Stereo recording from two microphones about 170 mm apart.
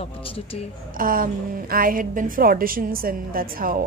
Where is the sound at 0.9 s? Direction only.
55° right (ahead or behind).